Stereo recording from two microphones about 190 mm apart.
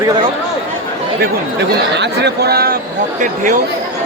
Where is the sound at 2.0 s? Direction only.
60° right (ahead or behind).